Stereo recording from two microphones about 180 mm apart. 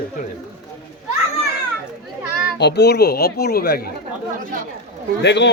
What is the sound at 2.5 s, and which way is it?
Speech, 65° left (ahead or behind).